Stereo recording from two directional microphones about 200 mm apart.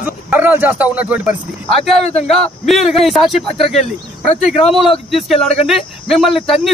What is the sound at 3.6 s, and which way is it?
Speech, 35° left (ahead or behind).